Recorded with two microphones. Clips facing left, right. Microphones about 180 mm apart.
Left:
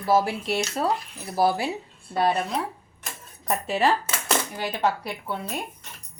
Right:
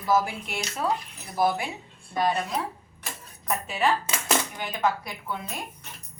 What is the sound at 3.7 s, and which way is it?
A woman's voice, 35° left (ahead or behind).